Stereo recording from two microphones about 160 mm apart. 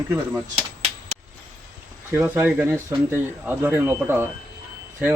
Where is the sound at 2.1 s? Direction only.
10° right (ahead or behind).